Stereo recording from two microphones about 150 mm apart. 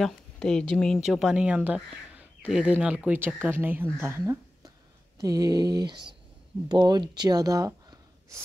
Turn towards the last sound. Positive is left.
turn(degrees=-25)  # may be behind; listen again after turning